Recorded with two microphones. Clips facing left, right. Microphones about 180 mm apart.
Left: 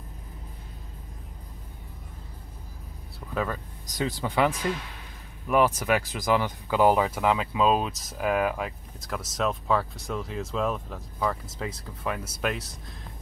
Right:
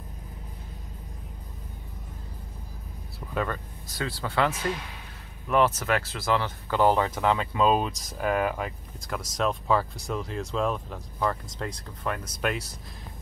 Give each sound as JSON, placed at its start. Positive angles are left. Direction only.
{"t": 3.9, "sound": "speech", "side_deg": 15}